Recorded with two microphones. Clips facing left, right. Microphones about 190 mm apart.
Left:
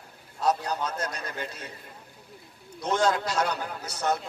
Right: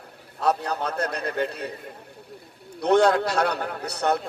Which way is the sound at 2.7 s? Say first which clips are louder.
Right 7 dB; 60° right (ahead or behind).